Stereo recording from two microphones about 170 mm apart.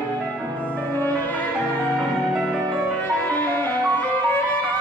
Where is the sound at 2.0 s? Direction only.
Centre (ahead or behind).